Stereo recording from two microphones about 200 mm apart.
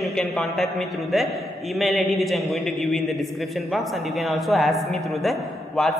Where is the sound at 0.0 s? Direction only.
Centre (ahead or behind).